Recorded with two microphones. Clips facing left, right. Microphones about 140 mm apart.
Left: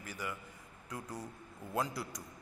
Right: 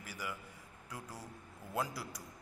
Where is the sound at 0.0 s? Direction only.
10° right (ahead or behind).